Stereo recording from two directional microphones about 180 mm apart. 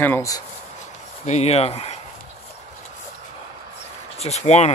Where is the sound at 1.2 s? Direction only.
40° left (ahead or behind).